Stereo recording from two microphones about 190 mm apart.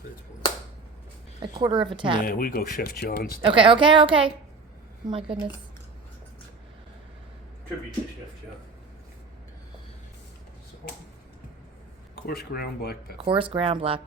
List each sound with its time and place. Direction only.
1.4 s a woman's voice: 25° right (ahead or behind)
2.2 s speech: 50° left (ahead or behind)
3.4 s a woman's voice: 25° right (ahead or behind)
12.1 s speech: 55° left (ahead or behind)
13.1 s a woman's voice: 30° right (ahead or behind)